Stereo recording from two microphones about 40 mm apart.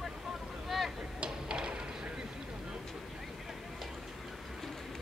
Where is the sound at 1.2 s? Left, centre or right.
Right.